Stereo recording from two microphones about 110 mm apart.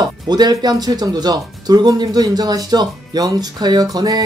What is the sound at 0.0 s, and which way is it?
Speech, 40° right (ahead or behind).